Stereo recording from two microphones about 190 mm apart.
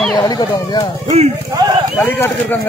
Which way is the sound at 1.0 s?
35° right (ahead or behind).